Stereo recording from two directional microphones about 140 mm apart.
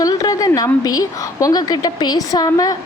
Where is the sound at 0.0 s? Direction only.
25° left (ahead or behind).